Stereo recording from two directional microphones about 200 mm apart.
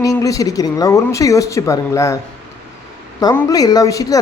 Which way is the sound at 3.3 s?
15° left (ahead or behind).